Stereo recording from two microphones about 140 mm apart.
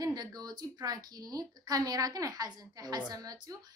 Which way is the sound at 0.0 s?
30° right (ahead or behind).